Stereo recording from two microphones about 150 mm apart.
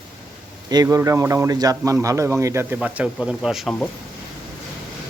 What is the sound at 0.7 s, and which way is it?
Speech, 25° right (ahead or behind).